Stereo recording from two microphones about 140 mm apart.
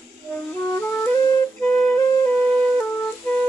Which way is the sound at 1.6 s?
Centre (ahead or behind).